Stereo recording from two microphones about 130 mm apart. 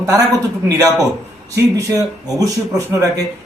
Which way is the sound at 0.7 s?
25° right (ahead or behind).